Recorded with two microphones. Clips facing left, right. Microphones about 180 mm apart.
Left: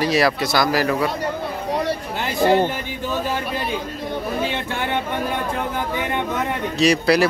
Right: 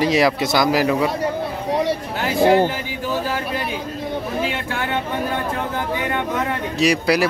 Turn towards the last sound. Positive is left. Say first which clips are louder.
# left 1 dB
turn(degrees=-10)  # may be behind; listen again after turning